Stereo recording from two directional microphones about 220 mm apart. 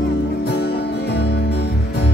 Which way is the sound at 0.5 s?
45° left (ahead or behind).